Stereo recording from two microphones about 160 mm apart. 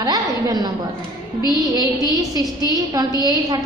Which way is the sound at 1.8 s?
25° right (ahead or behind).